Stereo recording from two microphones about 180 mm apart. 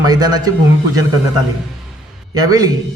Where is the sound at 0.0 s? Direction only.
20° right (ahead or behind).